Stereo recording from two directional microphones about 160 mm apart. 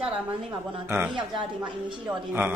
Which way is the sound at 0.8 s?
15° right (ahead or behind).